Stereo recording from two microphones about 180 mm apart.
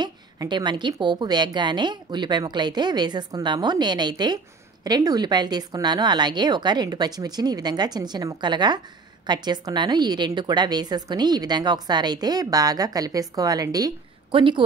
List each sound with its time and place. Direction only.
0.0 s a woman's voice: 25° right (ahead or behind)